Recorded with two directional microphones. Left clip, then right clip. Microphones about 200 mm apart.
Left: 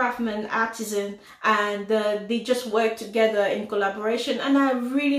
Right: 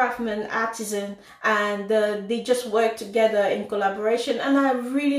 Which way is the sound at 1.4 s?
5° left (ahead or behind).